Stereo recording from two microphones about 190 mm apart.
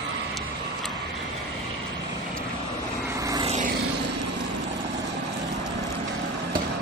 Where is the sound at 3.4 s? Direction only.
35° right (ahead or behind).